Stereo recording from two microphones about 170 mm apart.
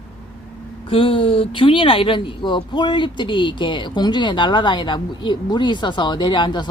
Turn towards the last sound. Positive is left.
turn(degrees=25)  # may be behind; listen again after turning